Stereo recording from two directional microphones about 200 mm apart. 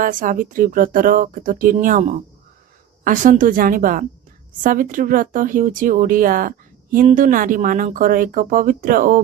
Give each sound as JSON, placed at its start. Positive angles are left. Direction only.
{"t": 0.0, "sound": "speech", "side_deg": -40}